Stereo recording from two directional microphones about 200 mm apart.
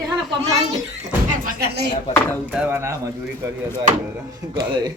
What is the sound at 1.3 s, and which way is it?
Speech, 45° right (ahead or behind).